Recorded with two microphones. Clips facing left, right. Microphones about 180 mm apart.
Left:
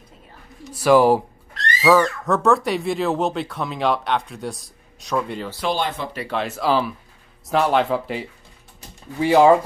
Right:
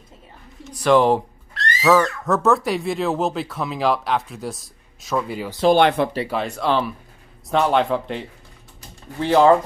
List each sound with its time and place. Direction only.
0.7 s speech: 5° left (ahead or behind)
5.8 s speech: 65° right (ahead or behind)
6.2 s speech: centre (ahead or behind)